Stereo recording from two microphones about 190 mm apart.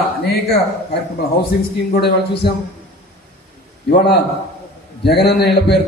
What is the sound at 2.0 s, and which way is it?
Speech, 60° left (ahead or behind).